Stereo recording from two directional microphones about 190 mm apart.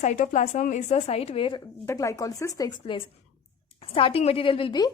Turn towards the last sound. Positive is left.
turn(degrees=25)  # may be behind; listen again after turning